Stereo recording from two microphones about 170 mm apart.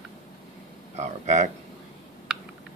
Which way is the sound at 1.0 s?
45° right (ahead or behind).